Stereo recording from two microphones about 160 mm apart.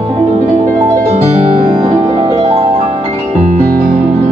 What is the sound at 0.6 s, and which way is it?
Music, 20° right (ahead or behind).